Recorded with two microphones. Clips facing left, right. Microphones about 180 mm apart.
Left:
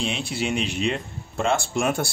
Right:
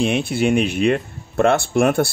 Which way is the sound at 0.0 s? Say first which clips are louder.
Right 9 dB; 55° right (ahead or behind).